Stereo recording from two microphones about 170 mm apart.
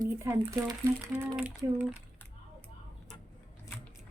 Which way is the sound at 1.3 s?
5° right (ahead or behind).